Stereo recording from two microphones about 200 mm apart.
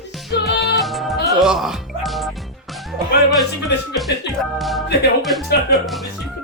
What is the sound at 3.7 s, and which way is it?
Music, 55° left (ahead or behind).